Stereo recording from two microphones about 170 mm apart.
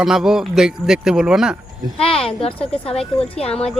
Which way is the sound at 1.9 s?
35° left (ahead or behind).